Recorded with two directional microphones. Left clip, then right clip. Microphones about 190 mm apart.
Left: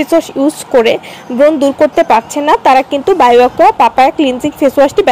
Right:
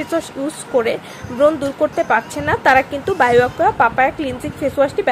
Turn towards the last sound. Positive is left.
turn(degrees=30)  # may be behind; listen again after turning